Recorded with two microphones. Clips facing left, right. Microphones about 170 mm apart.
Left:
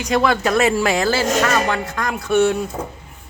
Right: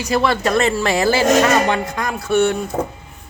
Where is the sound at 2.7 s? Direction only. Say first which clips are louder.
Right 6 dB; 50° right (ahead or behind).